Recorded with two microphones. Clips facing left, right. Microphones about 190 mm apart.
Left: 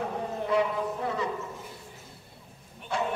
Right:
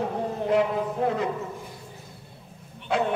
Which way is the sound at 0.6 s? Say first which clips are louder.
Right 3 dB; 55° right (ahead or behind).